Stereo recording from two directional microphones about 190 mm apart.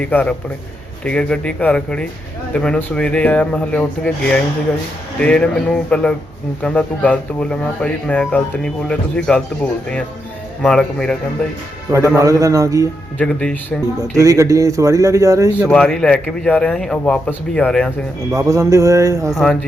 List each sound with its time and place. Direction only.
0.0 s speech: 10° left (ahead or behind)
10.6 s speech: 5° left (ahead or behind)
12.1 s speech: 15° right (ahead or behind)
13.1 s speech: 5° left (ahead or behind)
14.2 s speech: 15° right (ahead or behind)
15.6 s speech: 5° left (ahead or behind)
18.3 s speech: 15° right (ahead or behind)
19.3 s speech: centre (ahead or behind)